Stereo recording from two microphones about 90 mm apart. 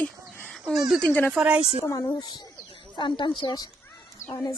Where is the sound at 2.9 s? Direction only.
60° left (ahead or behind).